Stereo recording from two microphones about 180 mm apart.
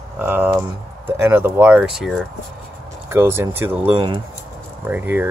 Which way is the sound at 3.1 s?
15° right (ahead or behind).